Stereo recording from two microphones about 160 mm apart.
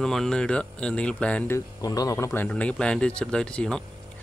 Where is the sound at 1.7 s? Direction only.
20° left (ahead or behind).